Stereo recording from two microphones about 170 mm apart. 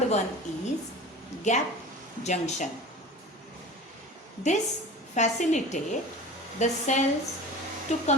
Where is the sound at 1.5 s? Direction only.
45° left (ahead or behind).